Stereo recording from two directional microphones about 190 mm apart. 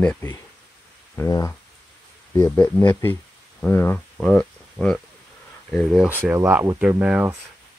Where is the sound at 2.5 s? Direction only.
15° left (ahead or behind); by 7.3 s 5° right (ahead or behind).